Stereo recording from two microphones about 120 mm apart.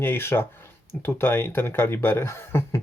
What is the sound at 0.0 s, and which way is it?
Speech, 20° left (ahead or behind).